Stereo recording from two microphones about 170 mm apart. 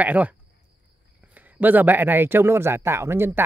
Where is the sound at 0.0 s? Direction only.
10° right (ahead or behind).